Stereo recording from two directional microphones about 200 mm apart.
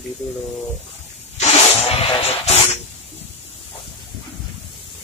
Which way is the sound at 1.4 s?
30° left (ahead or behind).